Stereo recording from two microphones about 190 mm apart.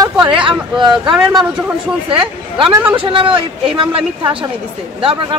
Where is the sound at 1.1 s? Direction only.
5° right (ahead or behind).